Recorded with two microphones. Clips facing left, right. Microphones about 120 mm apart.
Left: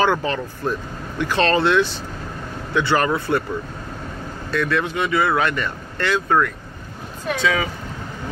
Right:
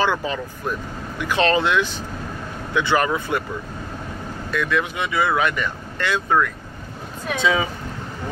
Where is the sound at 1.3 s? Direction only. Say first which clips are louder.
Left 1 dB; 15° right (ahead or behind).